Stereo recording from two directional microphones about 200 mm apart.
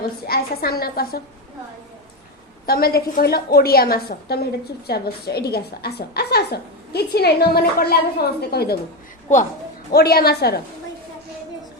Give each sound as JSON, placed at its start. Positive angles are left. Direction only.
{"t": 0.3, "sound": "a woman's voice", "side_deg": 50}
{"t": 2.6, "sound": "a woman's voice", "side_deg": 50}
{"t": 9.9, "sound": "a woman's voice", "side_deg": 50}